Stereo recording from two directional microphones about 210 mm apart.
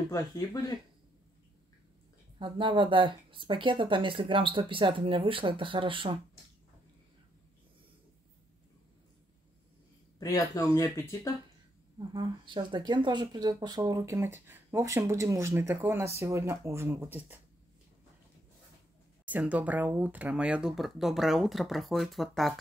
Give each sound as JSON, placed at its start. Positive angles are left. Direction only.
{"t": 0.1, "sound": "speech", "side_deg": 15}
{"t": 2.3, "sound": "speech", "side_deg": -25}
{"t": 10.1, "sound": "speech", "side_deg": 15}
{"t": 12.1, "sound": "speech", "side_deg": -20}
{"t": 19.2, "sound": "speech", "side_deg": -5}